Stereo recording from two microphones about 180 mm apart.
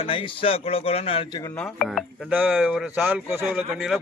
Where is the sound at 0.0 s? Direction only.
30° left (ahead or behind).